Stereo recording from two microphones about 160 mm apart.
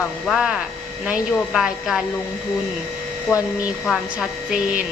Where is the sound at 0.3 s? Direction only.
5° right (ahead or behind).